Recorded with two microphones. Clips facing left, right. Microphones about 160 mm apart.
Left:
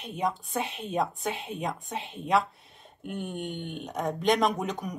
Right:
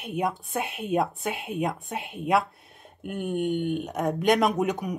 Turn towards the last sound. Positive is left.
turn(degrees=-5)  # may be behind; listen again after turning